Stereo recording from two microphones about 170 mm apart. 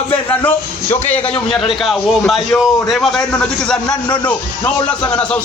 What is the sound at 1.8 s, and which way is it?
A man's voice, centre (ahead or behind).